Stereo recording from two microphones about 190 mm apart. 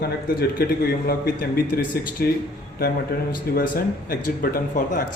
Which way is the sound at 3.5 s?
50° left (ahead or behind).